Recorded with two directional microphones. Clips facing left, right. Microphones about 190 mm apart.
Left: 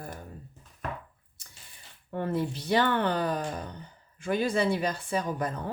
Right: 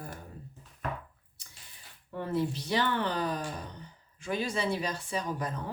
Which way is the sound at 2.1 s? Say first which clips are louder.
Left 1 dB; 55° left (ahead or behind).